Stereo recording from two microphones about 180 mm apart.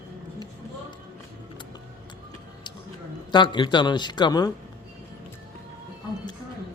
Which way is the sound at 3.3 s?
25° left (ahead or behind).